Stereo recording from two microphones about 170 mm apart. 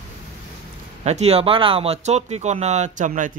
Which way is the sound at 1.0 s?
40° right (ahead or behind).